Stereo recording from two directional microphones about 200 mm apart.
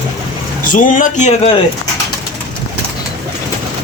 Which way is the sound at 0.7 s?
40° left (ahead or behind).